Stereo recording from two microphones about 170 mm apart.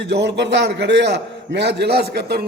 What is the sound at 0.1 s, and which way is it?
A man's voice, 90° right.